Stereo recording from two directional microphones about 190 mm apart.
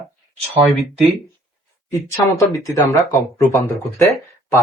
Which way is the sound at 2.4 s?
15° left (ahead or behind).